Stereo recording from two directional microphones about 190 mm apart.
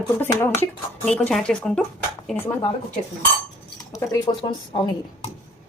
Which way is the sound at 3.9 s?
15° left (ahead or behind).